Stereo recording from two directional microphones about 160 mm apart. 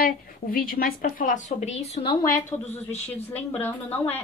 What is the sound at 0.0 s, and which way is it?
A woman's voice, 65° left (ahead or behind).